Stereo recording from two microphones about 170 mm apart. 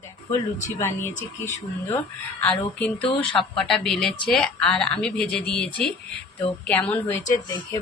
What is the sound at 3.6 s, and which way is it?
Speech, centre (ahead or behind).